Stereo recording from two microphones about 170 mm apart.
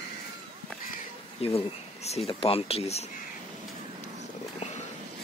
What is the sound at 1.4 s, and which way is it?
Speech, 35° left (ahead or behind).